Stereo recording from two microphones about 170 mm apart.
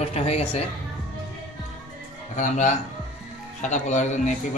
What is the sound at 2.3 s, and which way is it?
A man's voice, 45° left (ahead or behind).